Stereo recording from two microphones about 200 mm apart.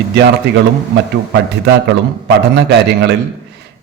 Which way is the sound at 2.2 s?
55° right (ahead or behind).